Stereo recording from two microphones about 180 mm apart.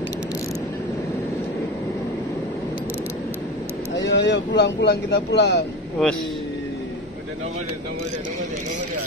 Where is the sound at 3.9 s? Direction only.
80° left.